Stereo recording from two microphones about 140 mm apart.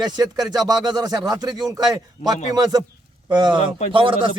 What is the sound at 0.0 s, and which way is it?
Speech, 30° right (ahead or behind).